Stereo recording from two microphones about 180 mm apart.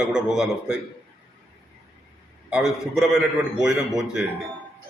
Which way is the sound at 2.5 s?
Centre (ahead or behind).